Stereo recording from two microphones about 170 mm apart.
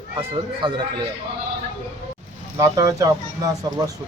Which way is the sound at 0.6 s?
25° right (ahead or behind).